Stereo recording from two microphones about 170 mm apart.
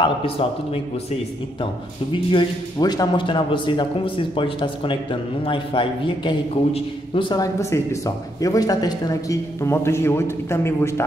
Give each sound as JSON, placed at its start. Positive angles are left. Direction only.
{"t": 0.0, "sound": "a man's voice", "side_deg": 30}
{"t": 2.3, "sound": "speech", "side_deg": 25}